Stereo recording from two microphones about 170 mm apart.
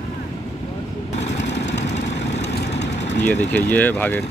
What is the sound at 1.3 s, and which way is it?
Vehicle, 90° left.